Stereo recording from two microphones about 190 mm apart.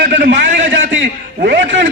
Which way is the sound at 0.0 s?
65° right (ahead or behind).